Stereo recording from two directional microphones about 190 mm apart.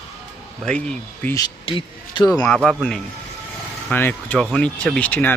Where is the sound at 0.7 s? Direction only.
5° left (ahead or behind).